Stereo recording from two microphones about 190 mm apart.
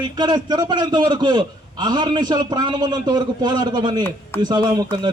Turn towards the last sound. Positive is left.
turn(degrees=-20)  # may be behind; listen again after turning